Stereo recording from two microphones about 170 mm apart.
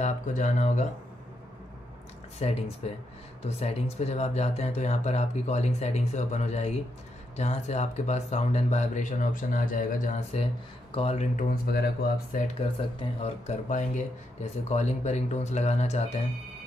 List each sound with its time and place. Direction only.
0.0 s speech: 45° left (ahead or behind)
2.4 s speech: 40° left (ahead or behind)